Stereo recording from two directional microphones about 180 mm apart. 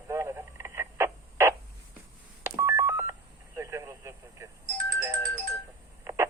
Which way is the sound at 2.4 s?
15° right (ahead or behind).